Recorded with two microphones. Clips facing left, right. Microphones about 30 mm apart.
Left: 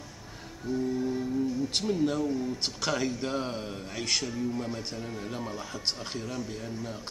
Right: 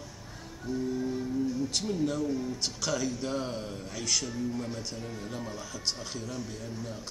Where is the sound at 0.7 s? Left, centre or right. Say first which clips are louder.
Left 2 dB; centre.